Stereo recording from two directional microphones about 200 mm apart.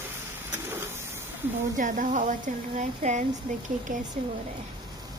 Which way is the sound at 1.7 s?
40° right (ahead or behind).